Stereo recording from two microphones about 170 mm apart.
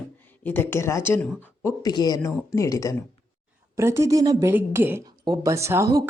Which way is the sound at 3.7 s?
15° right (ahead or behind).